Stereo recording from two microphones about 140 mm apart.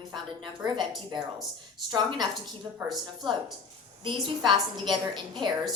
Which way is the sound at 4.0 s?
35° right (ahead or behind).